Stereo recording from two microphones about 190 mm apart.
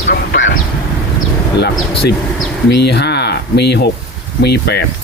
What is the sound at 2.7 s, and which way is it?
Speech, 60° left (ahead or behind).